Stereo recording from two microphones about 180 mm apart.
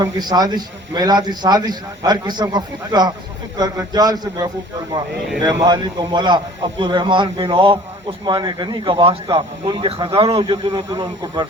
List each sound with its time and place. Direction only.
0.0 s a man's voice: 20° right (ahead or behind)